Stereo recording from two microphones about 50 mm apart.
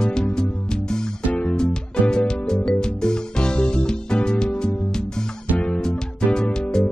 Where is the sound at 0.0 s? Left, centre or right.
Centre.